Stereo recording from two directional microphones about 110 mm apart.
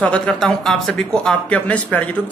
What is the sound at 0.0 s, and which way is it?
A man's voice, 5° left (ahead or behind).